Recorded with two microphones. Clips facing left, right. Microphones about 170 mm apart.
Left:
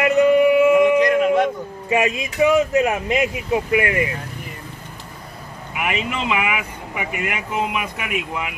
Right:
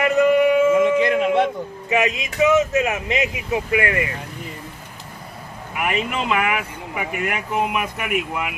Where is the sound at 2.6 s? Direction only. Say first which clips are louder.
Left 2 dB; 20° right (ahead or behind).